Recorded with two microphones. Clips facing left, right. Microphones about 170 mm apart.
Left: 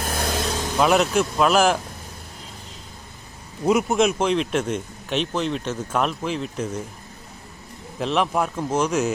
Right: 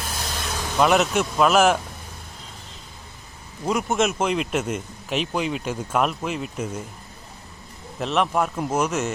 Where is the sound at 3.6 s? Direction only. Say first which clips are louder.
Left 4 dB; centre (ahead or behind).